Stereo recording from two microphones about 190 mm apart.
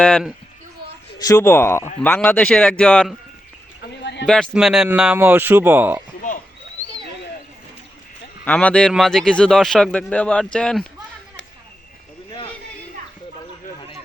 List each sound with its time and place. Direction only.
0.0 s a man's voice: centre (ahead or behind)
1.2 s a man's voice: 15° left (ahead or behind)
4.0 s a sound: 65° left (ahead or behind)
4.3 s speech: 5° left (ahead or behind)
8.4 s a man's voice: 5° left (ahead or behind)